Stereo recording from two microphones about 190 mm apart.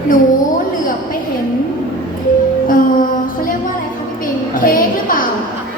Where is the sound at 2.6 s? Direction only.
45° left (ahead or behind).